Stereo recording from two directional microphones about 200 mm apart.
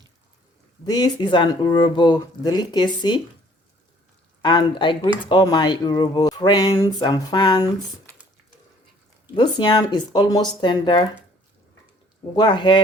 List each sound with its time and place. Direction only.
0.9 s speech: 20° left (ahead or behind)
4.4 s speech: 25° left (ahead or behind)
9.3 s speech: 20° left (ahead or behind)
12.4 s speech: 20° left (ahead or behind)